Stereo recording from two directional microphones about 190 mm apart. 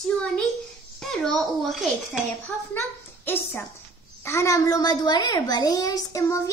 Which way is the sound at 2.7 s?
10° left (ahead or behind).